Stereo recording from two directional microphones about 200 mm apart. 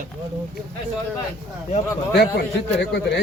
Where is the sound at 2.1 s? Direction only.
55° left (ahead or behind).